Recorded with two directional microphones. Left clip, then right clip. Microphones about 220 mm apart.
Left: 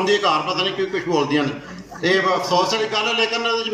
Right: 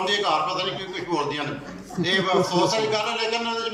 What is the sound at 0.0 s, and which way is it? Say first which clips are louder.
Speech: left 4 dB; 45° left (ahead or behind).